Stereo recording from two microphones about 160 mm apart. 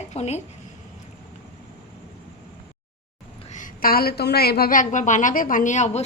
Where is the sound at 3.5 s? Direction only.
60° left (ahead or behind).